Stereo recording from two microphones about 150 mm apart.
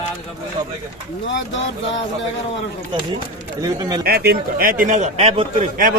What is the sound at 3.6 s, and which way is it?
Speech, 25° right (ahead or behind).